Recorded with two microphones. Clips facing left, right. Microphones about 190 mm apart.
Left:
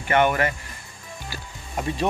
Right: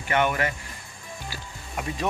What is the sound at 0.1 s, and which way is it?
Speech, 55° left (ahead or behind).